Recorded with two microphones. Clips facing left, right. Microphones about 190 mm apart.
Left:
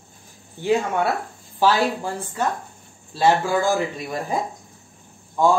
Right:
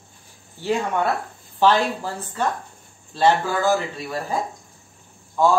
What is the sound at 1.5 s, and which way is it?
Speech, 10° left (ahead or behind).